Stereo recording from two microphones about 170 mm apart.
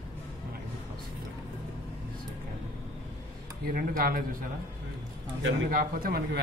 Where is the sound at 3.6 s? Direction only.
55° right (ahead or behind).